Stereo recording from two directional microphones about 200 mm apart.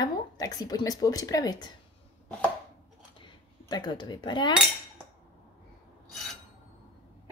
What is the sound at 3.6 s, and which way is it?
Speech, 20° left (ahead or behind).